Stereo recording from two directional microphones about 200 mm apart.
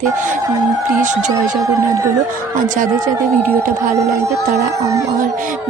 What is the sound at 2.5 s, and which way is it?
Speech, 40° right (ahead or behind).